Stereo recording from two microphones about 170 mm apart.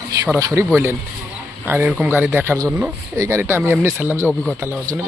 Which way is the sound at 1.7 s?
15° right (ahead or behind).